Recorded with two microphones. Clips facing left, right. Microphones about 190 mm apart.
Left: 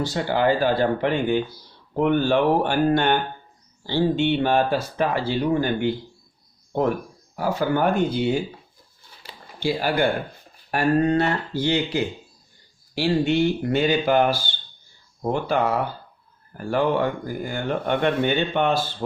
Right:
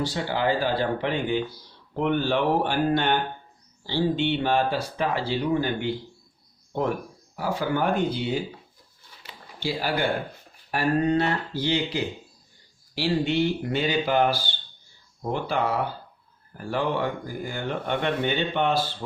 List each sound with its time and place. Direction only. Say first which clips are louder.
0.0 s speech: left 4 dB; 50° left (ahead or behind)
7.3 s speech: left 4 dB; 45° left (ahead or behind)
9.2 s a sound: left 2 dB; 30° left (ahead or behind)
9.6 s speech: left 4 dB; 50° left (ahead or behind)